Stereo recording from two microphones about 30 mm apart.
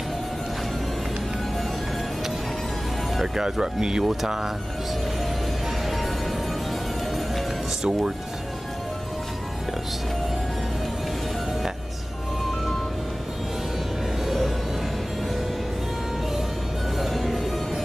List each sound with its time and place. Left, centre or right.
3.3 s speech: centre
4.0 s speech: centre
17.0 s music: centre